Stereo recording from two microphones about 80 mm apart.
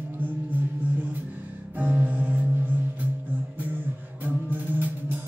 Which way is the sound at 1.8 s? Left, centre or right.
Centre.